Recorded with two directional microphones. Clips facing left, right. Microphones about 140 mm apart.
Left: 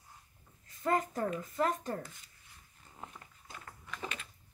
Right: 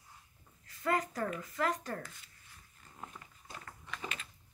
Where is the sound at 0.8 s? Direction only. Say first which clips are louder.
Left 2 dB; 25° left (ahead or behind).